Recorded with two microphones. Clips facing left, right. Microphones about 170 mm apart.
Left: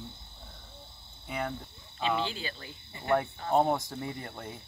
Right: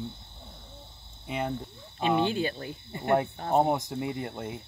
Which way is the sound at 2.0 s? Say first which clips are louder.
Right 6 dB; 55° right (ahead or behind).